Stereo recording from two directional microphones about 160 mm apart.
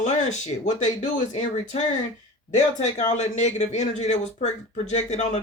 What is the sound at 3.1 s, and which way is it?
Speech, 45° left (ahead or behind).